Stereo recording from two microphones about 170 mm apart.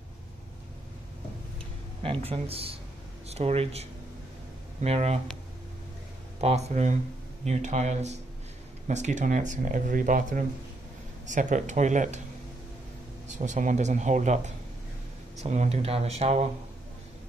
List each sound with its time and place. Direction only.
2.0 s speech: 35° right (ahead or behind)
4.8 s speech: 40° right (ahead or behind)
6.4 s speech: 40° right (ahead or behind)
13.3 s speech: 45° right (ahead or behind)